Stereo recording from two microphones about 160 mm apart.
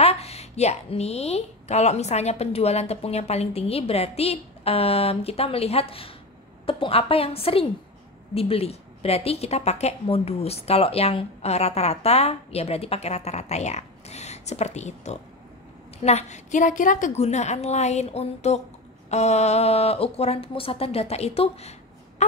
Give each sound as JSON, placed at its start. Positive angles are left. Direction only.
{"t": 0.0, "sound": "a woman's voice", "side_deg": 40}